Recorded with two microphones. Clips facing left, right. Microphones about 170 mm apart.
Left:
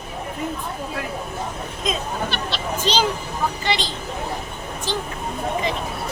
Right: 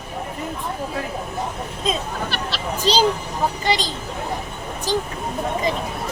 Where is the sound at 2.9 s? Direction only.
35° right (ahead or behind).